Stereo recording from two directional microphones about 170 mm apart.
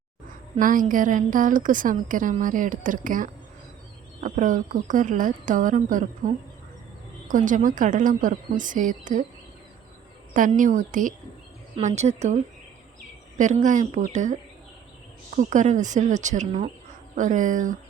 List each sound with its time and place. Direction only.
0.5 s speech: 50° right (ahead or behind)
10.6 s speech: 50° right (ahead or behind)
15.4 s speech: 45° right (ahead or behind)